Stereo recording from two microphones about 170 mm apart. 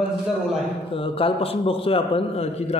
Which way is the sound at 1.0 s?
30° left (ahead or behind).